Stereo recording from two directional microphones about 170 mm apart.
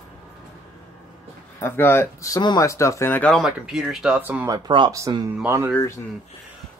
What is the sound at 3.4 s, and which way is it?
Speech, 5° right (ahead or behind).